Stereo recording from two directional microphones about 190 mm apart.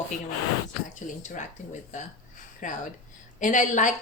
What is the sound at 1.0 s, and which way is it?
Speech, 40° left (ahead or behind).